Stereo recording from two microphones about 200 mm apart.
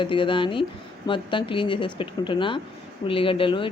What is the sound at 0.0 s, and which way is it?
A woman's voice, 25° left (ahead or behind).